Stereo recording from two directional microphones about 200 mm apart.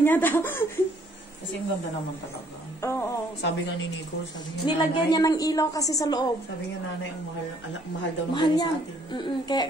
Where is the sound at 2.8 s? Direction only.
15° left (ahead or behind).